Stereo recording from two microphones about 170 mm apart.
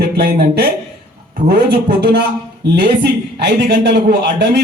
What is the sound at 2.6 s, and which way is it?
A man's voice, 80° right.